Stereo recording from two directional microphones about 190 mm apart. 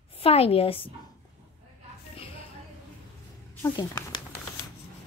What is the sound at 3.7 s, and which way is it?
Speech, 20° left (ahead or behind).